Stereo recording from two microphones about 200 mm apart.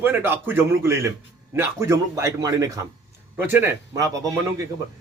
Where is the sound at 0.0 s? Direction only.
10° right (ahead or behind).